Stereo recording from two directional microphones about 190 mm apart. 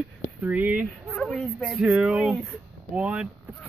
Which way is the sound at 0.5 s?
10° right (ahead or behind).